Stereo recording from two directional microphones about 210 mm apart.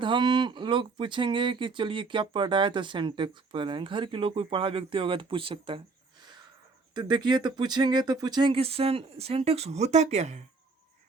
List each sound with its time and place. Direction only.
0.0 s speech: 20° right (ahead or behind)
6.9 s speech: 20° right (ahead or behind)